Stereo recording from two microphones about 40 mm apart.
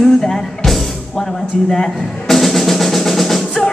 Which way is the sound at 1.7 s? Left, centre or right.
Centre.